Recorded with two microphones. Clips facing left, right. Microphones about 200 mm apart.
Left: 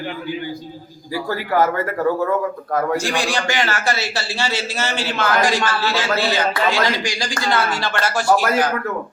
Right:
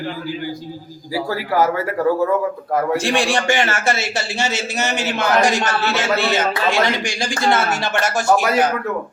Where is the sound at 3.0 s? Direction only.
30° right (ahead or behind).